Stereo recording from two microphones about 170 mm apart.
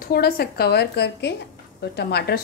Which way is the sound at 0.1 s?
65° left (ahead or behind).